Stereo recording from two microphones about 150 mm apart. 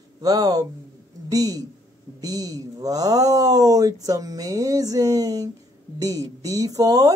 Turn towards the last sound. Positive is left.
turn(degrees=-25)  # may be behind; listen again after turning